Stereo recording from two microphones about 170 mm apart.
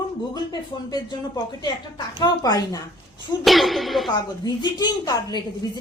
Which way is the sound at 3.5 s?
Centre (ahead or behind).